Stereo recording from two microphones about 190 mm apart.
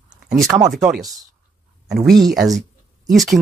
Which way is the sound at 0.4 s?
20° right (ahead or behind).